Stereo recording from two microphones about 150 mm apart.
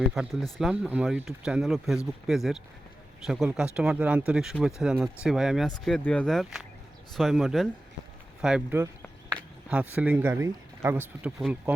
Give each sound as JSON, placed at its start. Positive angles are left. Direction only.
{"t": 0.1, "sound": "speech", "side_deg": 0}